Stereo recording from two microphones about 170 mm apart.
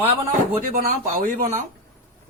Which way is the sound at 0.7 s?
55° right (ahead or behind).